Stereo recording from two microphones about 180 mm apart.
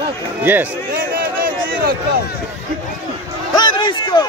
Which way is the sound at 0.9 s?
55° right (ahead or behind).